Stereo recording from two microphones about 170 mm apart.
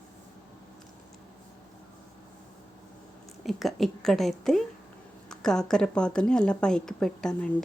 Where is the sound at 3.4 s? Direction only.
Centre (ahead or behind).